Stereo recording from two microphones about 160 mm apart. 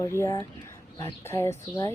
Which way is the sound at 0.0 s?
15° left (ahead or behind).